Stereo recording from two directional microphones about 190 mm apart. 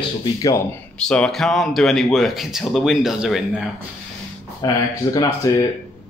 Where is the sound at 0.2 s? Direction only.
20° left (ahead or behind).